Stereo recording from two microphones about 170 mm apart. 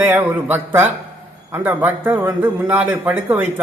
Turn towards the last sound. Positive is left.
turn(degrees=-10)  # may be behind; listen again after turning